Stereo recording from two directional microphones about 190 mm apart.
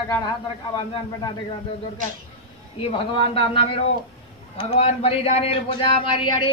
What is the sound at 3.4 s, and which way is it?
A man's voice, 30° left (ahead or behind).